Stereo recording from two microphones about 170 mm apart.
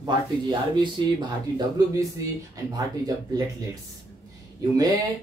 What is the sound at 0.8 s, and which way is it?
Speech, 25° right (ahead or behind).